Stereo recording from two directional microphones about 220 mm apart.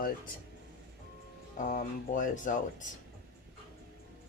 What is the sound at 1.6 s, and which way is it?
Speech, 35° left (ahead or behind).